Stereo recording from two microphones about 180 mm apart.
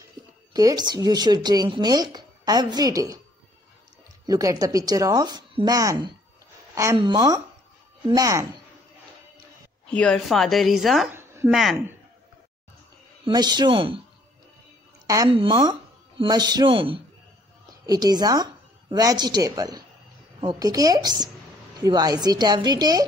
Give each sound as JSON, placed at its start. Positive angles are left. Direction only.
{"t": 0.5, "sound": "speech", "side_deg": -20}
{"t": 4.3, "sound": "speech", "side_deg": -20}
{"t": 9.8, "sound": "a woman's voice", "side_deg": 5}
{"t": 11.1, "sound": "a sound", "side_deg": -15}
{"t": 13.3, "sound": "speech", "side_deg": -25}
{"t": 15.0, "sound": "a woman's voice", "side_deg": -20}